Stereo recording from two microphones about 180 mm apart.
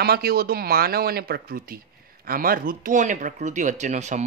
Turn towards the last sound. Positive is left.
turn(degrees=-40)  # may be behind; listen again after turning